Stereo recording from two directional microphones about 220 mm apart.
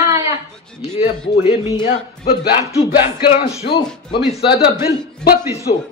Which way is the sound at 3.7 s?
20° left (ahead or behind).